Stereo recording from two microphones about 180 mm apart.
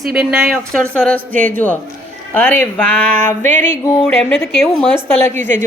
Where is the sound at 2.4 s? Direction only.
10° left (ahead or behind).